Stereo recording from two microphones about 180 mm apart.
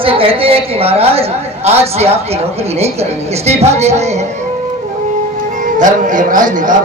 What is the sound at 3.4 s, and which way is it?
Speech, 35° right (ahead or behind).